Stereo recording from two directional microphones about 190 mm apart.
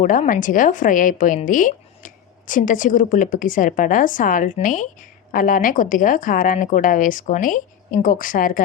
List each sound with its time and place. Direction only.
0.0 s a woman's voice: 45° left (ahead or behind)